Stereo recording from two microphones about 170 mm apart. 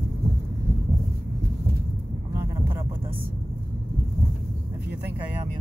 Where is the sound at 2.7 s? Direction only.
30° right (ahead or behind).